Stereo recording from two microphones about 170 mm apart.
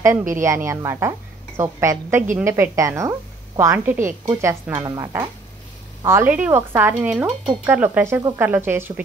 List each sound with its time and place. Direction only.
0.3 s a woman's voice: 15° right (ahead or behind)